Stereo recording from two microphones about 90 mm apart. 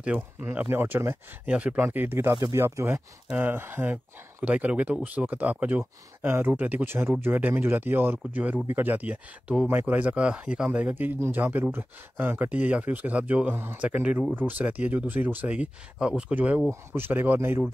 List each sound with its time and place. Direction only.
0.0 s a man's voice: 20° right (ahead or behind)
1.4 s a man's voice: 10° right (ahead or behind)